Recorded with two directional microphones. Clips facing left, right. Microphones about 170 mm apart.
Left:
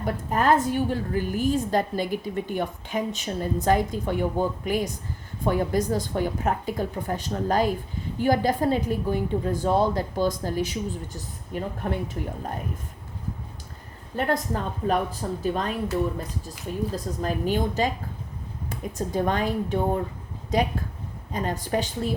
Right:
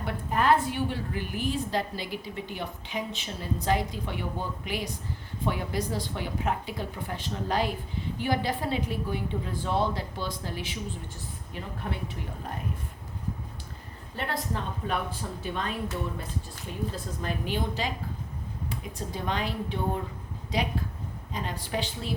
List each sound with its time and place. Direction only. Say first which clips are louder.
0.0 s a woman's voice: left 3 dB; 45° left (ahead or behind)
14.2 s a woman's voice: left 7 dB; 45° left (ahead or behind)
16.9 s a woman's voice: left 6 dB; 40° left (ahead or behind)